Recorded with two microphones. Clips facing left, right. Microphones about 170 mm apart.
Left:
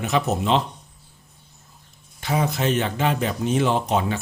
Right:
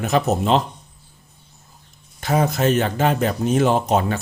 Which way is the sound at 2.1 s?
45° right (ahead or behind).